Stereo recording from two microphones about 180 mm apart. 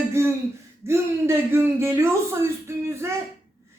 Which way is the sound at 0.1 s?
15° right (ahead or behind).